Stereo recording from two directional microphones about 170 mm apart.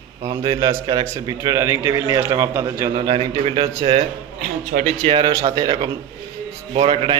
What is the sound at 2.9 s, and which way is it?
Speech, 30° right (ahead or behind).